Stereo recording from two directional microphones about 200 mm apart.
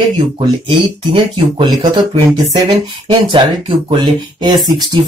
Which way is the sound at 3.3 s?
25° right (ahead or behind).